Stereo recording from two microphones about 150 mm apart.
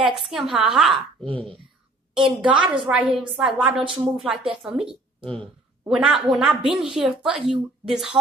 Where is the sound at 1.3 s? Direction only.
35° right (ahead or behind).